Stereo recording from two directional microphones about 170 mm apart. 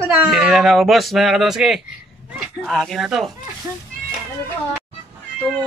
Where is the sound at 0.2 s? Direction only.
5° right (ahead or behind).